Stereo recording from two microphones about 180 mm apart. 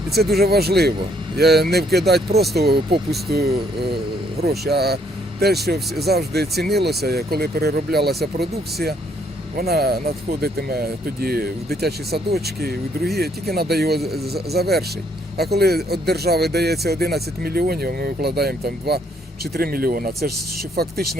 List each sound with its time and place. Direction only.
0.1 s speech: 60° right (ahead or behind)